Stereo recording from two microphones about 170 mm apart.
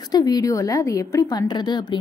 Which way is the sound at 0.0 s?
20° left (ahead or behind).